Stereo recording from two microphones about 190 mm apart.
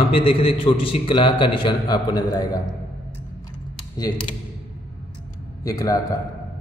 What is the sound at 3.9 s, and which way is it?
Speech, 20° left (ahead or behind).